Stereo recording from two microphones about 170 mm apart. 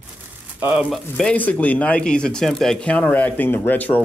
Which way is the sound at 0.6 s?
10° right (ahead or behind).